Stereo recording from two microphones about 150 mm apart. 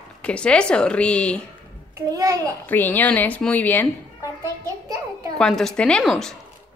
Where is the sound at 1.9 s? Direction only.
20° right (ahead or behind).